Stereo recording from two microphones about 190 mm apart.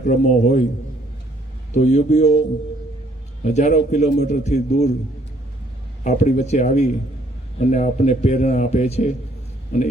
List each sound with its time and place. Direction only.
0.0 s a man's voice: 40° left (ahead or behind)
1.7 s a man's voice: 40° left (ahead or behind)
3.4 s a man's voice: 40° left (ahead or behind)
6.0 s a man's voice: 40° left (ahead or behind)